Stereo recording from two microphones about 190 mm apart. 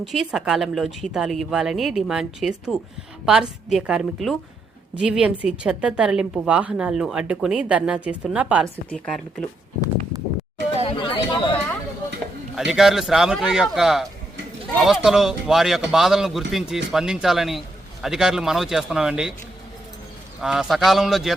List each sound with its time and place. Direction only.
0.0 s a woman's voice: centre (ahead or behind)
8.9 s a woman's voice: 5° left (ahead or behind)
10.8 s chatter: 25° left (ahead or behind)
12.5 s a woman's voice: centre (ahead or behind)
20.4 s a woman's voice: 5° right (ahead or behind)